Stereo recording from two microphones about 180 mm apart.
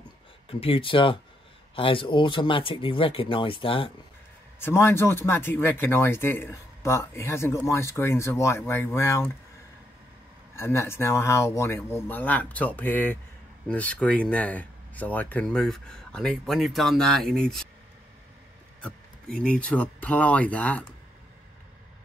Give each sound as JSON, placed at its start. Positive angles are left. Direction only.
{"t": 0.5, "sound": "speech", "side_deg": 30}
{"t": 4.6, "sound": "speech", "side_deg": 15}
{"t": 10.5, "sound": "speech", "side_deg": 15}
{"t": 19.3, "sound": "speech", "side_deg": 5}